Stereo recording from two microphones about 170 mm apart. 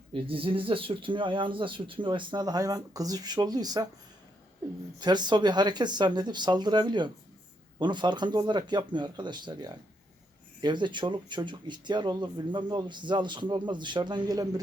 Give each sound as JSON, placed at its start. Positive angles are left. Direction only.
{"t": 0.1, "sound": "speech", "side_deg": -30}
{"t": 4.9, "sound": "speech", "side_deg": -25}